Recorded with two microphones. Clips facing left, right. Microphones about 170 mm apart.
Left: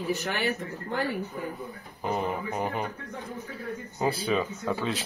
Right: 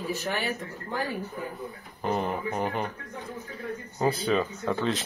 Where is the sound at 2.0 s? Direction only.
Centre (ahead or behind).